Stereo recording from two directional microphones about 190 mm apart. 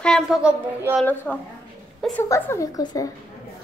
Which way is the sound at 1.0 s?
10° left (ahead or behind).